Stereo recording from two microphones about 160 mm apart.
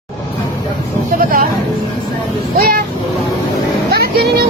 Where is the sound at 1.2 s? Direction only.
60° right (ahead or behind).